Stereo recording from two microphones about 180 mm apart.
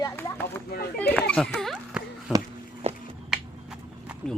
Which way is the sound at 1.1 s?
5° left (ahead or behind).